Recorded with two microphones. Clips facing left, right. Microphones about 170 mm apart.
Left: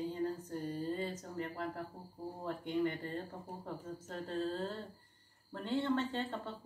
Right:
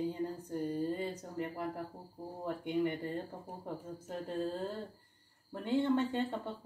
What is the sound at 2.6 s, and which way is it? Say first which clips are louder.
Speech: right 2 dB; 15° right (ahead or behind).